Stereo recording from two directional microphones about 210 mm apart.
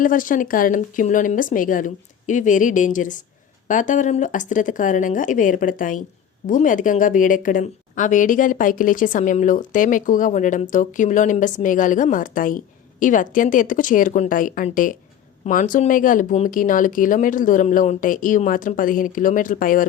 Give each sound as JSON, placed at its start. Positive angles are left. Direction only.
{"t": 0.0, "sound": "a woman's voice", "side_deg": 40}